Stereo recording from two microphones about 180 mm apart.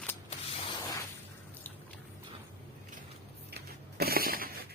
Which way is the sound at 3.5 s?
60° right (ahead or behind).